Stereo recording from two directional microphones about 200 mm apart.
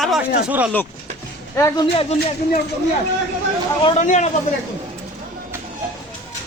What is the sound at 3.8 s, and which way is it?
Speech, 25° left (ahead or behind).